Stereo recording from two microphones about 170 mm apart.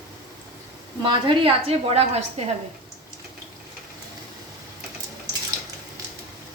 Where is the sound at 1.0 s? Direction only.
30° right (ahead or behind).